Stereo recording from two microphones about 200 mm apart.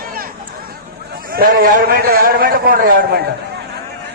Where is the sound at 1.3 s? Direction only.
45° right (ahead or behind).